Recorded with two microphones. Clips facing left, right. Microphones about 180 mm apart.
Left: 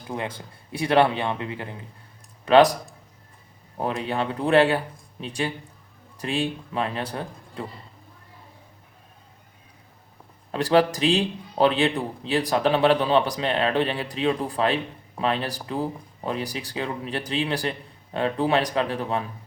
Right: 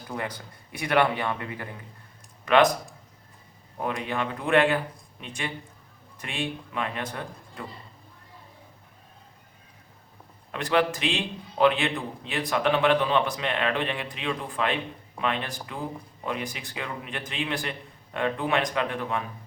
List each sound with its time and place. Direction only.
0.1 s speech: 25° left (ahead or behind)
2.4 s speech: 35° left (ahead or behind)
3.8 s a man's voice: 30° left (ahead or behind)
10.5 s a man's voice: 35° left (ahead or behind)